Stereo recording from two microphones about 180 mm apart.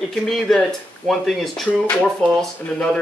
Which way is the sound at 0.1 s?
5° left (ahead or behind).